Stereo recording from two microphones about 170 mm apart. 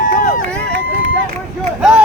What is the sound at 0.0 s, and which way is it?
Run, 50° left (ahead or behind).